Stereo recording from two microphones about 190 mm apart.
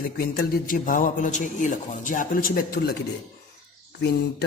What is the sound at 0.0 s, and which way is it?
A man's voice, 55° left (ahead or behind).